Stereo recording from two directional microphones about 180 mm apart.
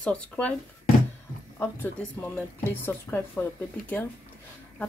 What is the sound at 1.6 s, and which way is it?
Speech, 10° left (ahead or behind).